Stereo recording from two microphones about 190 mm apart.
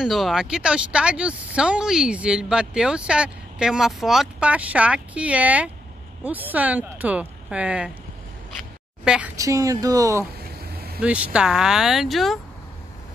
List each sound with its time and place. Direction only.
0.0 s speech: centre (ahead or behind)
9.0 s a woman's voice: 5° right (ahead or behind)
9.4 s speech: 15° right (ahead or behind)
11.0 s speech: 5° right (ahead or behind)